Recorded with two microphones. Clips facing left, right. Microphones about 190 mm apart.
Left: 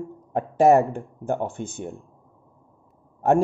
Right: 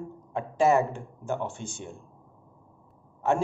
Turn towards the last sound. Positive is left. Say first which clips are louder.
# left 6 dB
turn(degrees=55)  # may be behind; listen again after turning